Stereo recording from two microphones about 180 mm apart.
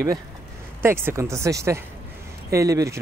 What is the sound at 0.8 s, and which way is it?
Speech, 15° right (ahead or behind).